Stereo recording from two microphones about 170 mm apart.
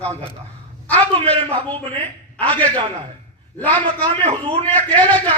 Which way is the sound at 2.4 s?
10° left (ahead or behind).